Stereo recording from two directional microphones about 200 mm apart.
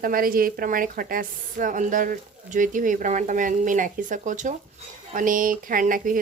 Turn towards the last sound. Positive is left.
turn(degrees=-45)  # may be behind; listen again after turning